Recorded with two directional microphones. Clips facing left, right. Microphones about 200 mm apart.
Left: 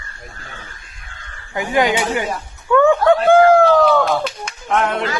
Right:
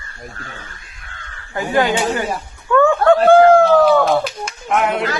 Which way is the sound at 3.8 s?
5° right (ahead or behind).